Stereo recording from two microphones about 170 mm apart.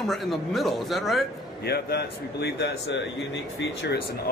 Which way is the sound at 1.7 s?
70° left (ahead or behind).